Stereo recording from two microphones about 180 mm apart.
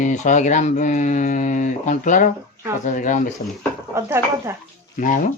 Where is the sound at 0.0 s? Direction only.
45° left (ahead or behind).